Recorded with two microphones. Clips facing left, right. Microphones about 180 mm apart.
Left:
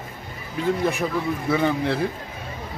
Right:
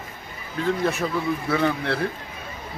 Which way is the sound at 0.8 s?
15° left (ahead or behind).